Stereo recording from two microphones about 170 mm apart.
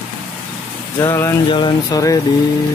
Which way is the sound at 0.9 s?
15° left (ahead or behind).